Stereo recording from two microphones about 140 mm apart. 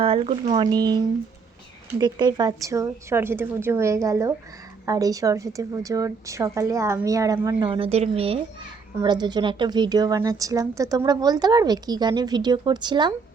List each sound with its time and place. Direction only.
0.0 s speech: 40° right (ahead or behind)
0.6 s a woman's voice: 30° right (ahead or behind); by 8.4 s 45° right (ahead or behind)
9.0 s a woman's voice: 30° right (ahead or behind)